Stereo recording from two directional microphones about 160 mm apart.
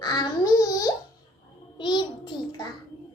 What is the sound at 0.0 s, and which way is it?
Babbling, 25° left (ahead or behind).